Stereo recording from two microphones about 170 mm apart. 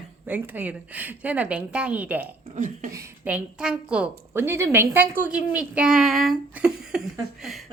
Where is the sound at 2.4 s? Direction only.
45° right (ahead or behind).